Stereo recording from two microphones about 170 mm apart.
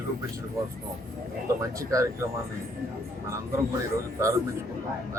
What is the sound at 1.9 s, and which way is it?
Speech, 20° right (ahead or behind).